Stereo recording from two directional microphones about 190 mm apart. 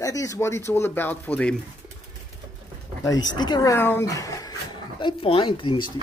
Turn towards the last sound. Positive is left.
turn(degrees=25)  # may be behind; listen again after turning